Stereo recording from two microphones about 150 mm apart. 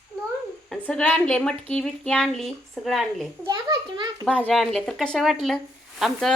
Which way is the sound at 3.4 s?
25° right (ahead or behind).